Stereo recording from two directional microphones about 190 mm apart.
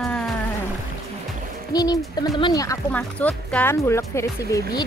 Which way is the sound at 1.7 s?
20° left (ahead or behind).